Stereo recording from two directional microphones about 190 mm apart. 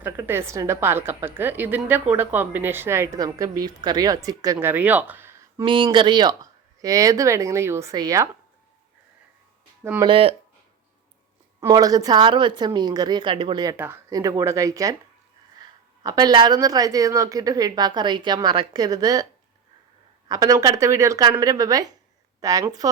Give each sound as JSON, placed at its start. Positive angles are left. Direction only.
{"t": 0.0, "sound": "a woman's voice", "side_deg": -10}
{"t": 5.6, "sound": "a woman's voice", "side_deg": -25}
{"t": 9.8, "sound": "a woman's voice", "side_deg": -10}
{"t": 10.1, "sound": "speech", "side_deg": -30}
{"t": 11.6, "sound": "speech", "side_deg": -20}
{"t": 13.7, "sound": "a woman's voice", "side_deg": -10}
{"t": 16.0, "sound": "a woman's voice", "side_deg": -20}